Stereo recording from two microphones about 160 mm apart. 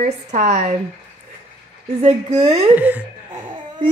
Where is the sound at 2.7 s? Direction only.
10° right (ahead or behind).